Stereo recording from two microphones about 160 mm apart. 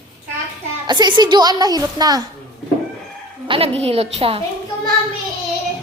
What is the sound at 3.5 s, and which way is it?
Speech, 35° right (ahead or behind).